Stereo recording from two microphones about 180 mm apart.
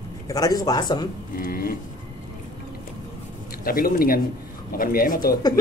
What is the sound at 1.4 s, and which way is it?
Speech, 55° left (ahead or behind).